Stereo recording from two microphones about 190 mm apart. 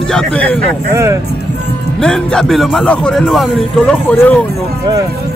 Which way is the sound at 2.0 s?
5° left (ahead or behind).